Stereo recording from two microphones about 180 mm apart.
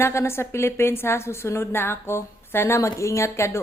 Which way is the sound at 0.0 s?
15° left (ahead or behind).